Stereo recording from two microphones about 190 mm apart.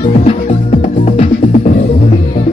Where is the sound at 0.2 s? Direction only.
35° left (ahead or behind).